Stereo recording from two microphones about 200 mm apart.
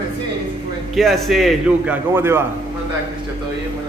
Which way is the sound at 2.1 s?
10° right (ahead or behind).